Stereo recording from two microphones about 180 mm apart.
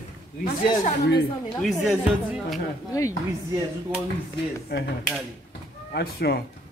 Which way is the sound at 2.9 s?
15° left (ahead or behind).